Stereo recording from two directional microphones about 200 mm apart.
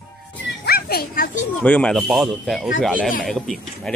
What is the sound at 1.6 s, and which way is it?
A child's voice, 5° left (ahead or behind).